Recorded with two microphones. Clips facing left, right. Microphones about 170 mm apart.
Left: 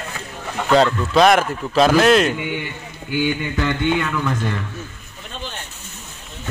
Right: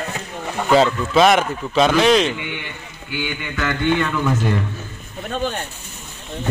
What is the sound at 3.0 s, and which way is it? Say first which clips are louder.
Mantra: left 6 dB; 45° left (ahead or behind).